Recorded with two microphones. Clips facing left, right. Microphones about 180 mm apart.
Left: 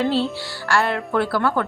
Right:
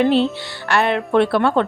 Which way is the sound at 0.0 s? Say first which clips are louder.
Right 5 dB; 20° right (ahead or behind).